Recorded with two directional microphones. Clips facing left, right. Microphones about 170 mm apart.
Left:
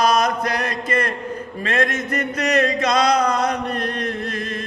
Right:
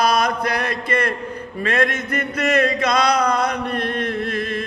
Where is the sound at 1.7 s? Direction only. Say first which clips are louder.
Even; 45° left (ahead or behind).